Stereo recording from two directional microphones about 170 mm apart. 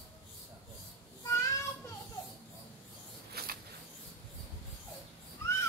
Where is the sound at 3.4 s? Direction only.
65° right (ahead or behind).